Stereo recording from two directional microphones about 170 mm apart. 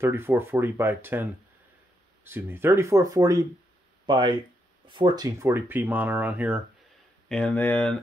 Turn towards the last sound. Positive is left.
turn(degrees=10)  # may be behind; listen again after turning